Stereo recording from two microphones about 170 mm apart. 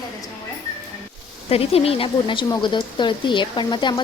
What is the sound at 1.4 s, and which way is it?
Speech, 35° left (ahead or behind).